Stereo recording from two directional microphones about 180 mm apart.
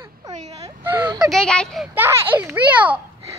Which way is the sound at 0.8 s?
10° right (ahead or behind).